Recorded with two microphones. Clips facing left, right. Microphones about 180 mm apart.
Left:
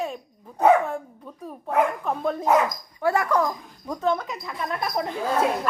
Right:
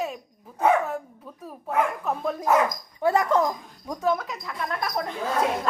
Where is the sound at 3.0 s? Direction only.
20° right (ahead or behind).